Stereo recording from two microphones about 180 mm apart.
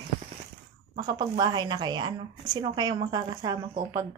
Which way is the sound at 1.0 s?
20° right (ahead or behind).